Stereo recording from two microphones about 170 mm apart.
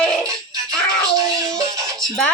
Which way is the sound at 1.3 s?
20° right (ahead or behind).